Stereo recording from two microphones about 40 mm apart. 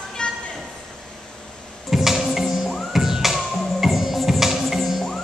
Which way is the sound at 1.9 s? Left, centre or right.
Centre.